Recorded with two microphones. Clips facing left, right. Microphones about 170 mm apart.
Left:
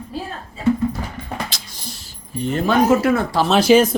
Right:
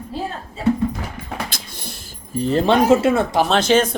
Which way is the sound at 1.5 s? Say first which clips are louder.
Right 1 dB; 55° right (ahead or behind).